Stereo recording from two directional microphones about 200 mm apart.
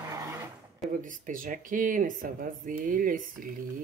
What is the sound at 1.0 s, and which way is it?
Speech, 40° right (ahead or behind).